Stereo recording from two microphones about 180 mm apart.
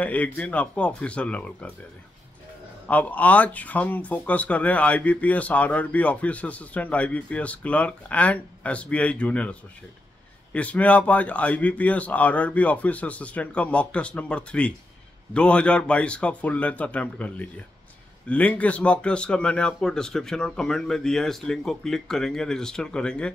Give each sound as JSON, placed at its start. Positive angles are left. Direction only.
{"t": 0.0, "sound": "speech", "side_deg": 10}
{"t": 2.9, "sound": "speech", "side_deg": 10}